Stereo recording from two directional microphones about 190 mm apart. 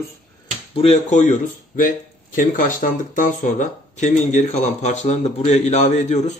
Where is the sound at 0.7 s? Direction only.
30° left (ahead or behind).